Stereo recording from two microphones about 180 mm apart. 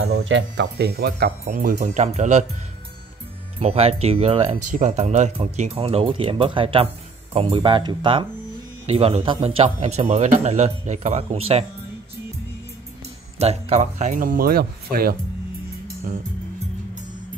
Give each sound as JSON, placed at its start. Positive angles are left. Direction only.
{"t": 0.0, "sound": "speech", "side_deg": -90}
{"t": 3.5, "sound": "speech", "side_deg": -35}
{"t": 13.4, "sound": "speech", "side_deg": -35}